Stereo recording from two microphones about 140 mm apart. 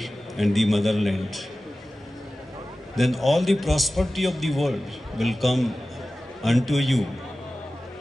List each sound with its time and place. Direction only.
0.0 s a man's voice: centre (ahead or behind)
3.0 s a man's voice: centre (ahead or behind)